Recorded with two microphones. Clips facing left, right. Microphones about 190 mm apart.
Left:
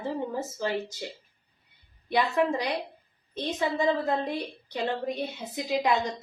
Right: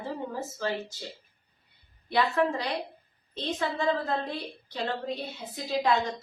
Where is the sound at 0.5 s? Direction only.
15° left (ahead or behind).